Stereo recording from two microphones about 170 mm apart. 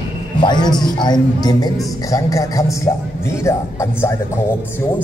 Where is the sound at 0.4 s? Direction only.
25° left (ahead or behind).